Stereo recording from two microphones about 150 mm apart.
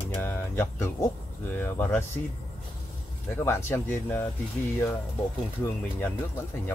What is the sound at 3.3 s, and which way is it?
Speech, 15° left (ahead or behind).